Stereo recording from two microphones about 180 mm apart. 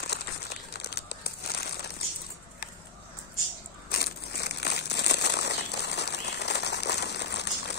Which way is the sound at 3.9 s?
60° left (ahead or behind).